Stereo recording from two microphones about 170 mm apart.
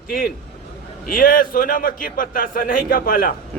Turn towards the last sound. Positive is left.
turn(degrees=55)  # may be behind; listen again after turning